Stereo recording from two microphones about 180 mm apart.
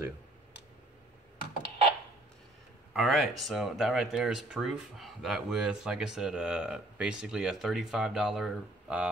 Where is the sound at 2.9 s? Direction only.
Centre (ahead or behind).